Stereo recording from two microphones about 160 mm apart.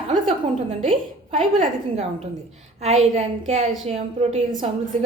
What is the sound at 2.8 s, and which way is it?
A woman's voice, 45° right (ahead or behind).